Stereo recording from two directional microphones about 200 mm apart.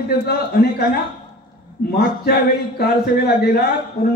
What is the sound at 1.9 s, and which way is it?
A man's voice, 50° left (ahead or behind).